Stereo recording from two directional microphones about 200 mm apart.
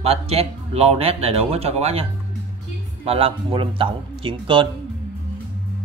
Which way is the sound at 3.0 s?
30° right (ahead or behind).